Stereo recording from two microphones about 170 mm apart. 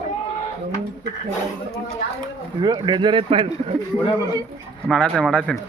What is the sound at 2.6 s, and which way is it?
Speech, 25° right (ahead or behind).